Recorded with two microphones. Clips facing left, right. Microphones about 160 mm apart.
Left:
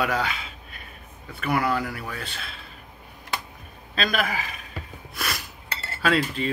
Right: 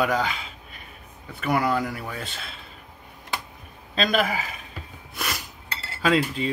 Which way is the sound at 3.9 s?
25° right (ahead or behind).